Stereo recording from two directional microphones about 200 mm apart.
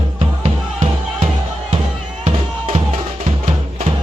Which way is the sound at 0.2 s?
35° right (ahead or behind).